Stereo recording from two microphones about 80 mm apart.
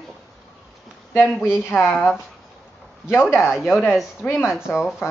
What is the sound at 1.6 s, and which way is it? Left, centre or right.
Speech, left.